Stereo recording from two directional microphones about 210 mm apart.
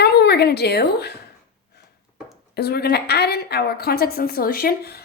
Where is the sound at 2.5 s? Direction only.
50° left (ahead or behind).